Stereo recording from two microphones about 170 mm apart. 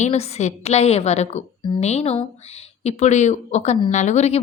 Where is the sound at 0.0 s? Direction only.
40° left (ahead or behind).